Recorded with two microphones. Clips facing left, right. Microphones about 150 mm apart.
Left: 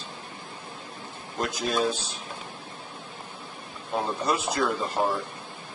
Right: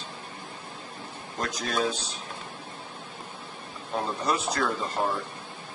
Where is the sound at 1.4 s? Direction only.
5° left (ahead or behind).